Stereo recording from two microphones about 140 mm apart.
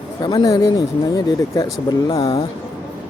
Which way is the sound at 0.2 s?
30° left (ahead or behind).